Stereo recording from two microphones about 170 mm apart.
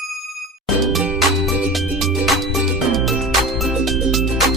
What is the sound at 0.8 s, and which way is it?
Music, 5° right (ahead or behind).